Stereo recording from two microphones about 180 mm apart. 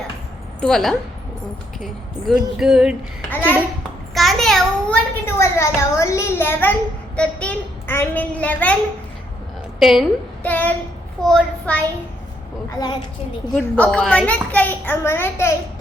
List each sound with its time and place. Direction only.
0.6 s a child's voice: centre (ahead or behind)
3.2 s a child's voice: 10° left (ahead or behind)
9.8 s a woman's voice: centre (ahead or behind)
10.5 s child singing: 10° left (ahead or behind)
11.2 s a child's voice: 5° left (ahead or behind)
12.7 s a child's voice: 25° left (ahead or behind)
13.6 s a child's voice: 10° left (ahead or behind)